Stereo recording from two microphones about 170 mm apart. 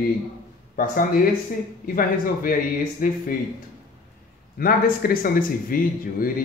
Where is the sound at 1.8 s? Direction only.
55° left (ahead or behind).